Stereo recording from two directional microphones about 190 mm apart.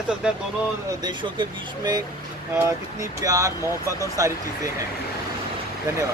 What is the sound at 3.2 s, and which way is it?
Speech, 20° right (ahead or behind).